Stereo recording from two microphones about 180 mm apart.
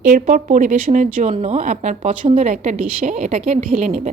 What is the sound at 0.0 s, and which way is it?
Speech, 45° right (ahead or behind).